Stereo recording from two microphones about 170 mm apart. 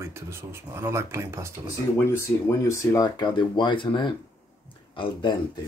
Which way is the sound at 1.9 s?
15° left (ahead or behind).